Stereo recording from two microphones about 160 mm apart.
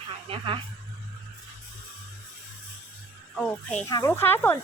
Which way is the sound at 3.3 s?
5° left (ahead or behind).